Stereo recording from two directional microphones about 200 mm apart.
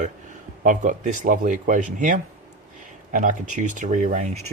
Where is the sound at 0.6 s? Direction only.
40° right (ahead or behind).